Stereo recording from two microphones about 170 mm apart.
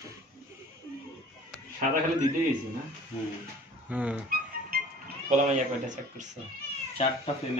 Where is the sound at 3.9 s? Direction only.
10° right (ahead or behind).